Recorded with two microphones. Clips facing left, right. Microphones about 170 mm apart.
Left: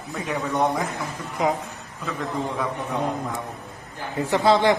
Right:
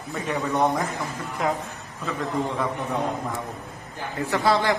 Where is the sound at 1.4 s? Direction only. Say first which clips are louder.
Left 3 dB; 20° left (ahead or behind).